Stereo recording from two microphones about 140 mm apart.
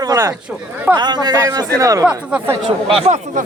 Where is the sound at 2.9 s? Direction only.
45° right (ahead or behind).